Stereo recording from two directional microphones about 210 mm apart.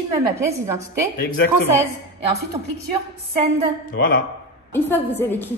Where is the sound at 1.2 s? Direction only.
45° left (ahead or behind).